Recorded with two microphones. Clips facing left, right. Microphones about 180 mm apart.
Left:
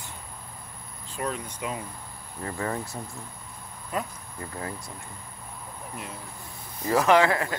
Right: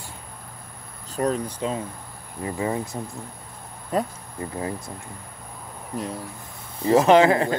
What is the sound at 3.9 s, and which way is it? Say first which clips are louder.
Speech: right 7 dB; 35° right (ahead or behind).